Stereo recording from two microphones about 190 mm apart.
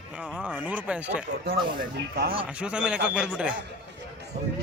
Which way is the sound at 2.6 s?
5° right (ahead or behind).